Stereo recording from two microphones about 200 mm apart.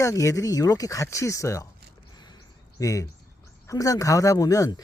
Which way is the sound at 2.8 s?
15° left (ahead or behind).